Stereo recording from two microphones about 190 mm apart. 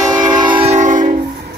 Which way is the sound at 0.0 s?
20° right (ahead or behind).